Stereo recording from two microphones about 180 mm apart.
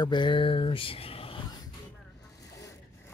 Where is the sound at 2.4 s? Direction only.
20° left (ahead or behind).